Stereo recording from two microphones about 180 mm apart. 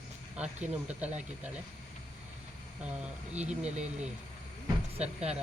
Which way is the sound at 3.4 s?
40° right (ahead or behind).